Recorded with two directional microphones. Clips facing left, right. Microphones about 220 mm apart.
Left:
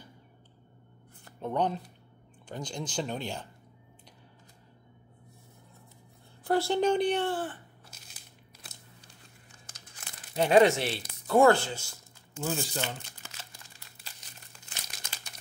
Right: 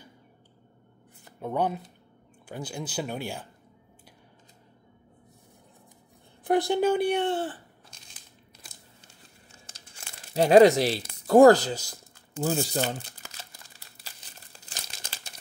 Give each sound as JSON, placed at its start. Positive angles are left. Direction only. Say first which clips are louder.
{"t": 1.2, "sound": "speech", "louder": "right 2 dB", "side_deg": -10}
{"t": 6.4, "sound": "speech", "louder": "right 3 dB", "side_deg": -15}
{"t": 7.2, "sound": "speech", "louder": "right 4 dB", "side_deg": -25}
{"t": 7.9, "sound": "crushing", "louder": "even", "side_deg": 5}
{"t": 9.0, "sound": "crumpling", "louder": "right 1 dB", "side_deg": -25}
{"t": 14.4, "sound": "crumpling", "louder": "right 3 dB", "side_deg": -35}